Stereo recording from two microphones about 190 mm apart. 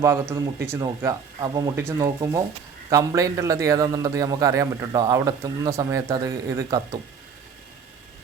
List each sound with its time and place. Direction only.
0.0 s a man's voice: 15° right (ahead or behind)